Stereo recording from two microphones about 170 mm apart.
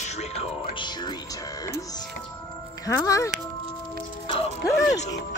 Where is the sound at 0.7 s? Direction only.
25° left (ahead or behind).